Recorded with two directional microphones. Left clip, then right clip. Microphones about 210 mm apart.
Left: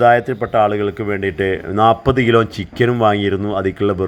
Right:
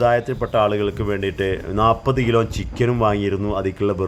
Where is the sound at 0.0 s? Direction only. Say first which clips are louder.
Left 5 dB; 10° left (ahead or behind).